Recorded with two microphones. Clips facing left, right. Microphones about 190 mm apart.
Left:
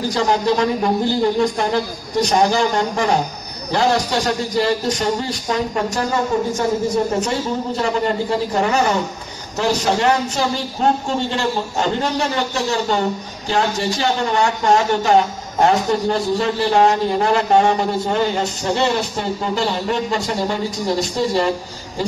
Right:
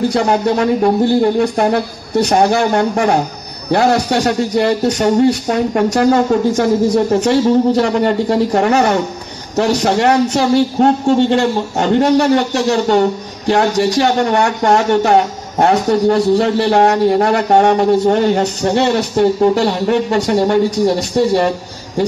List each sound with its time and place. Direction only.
0.1 s a man's voice: 60° right (ahead or behind)